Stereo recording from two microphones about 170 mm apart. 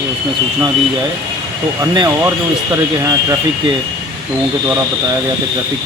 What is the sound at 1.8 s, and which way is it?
Speech, 25° right (ahead or behind).